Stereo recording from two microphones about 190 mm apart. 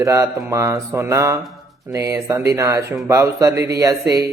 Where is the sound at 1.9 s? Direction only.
15° right (ahead or behind).